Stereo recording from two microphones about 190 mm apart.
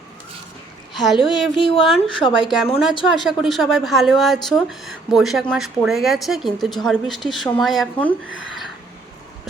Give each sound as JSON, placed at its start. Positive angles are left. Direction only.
{"t": 0.9, "sound": "speech", "side_deg": 0}
{"t": 1.3, "sound": "speech", "side_deg": 25}
{"t": 3.2, "sound": "speech", "side_deg": 0}